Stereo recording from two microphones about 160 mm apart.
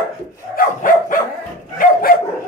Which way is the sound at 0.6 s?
60° left (ahead or behind).